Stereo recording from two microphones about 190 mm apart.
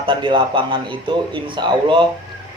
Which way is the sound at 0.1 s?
25° right (ahead or behind).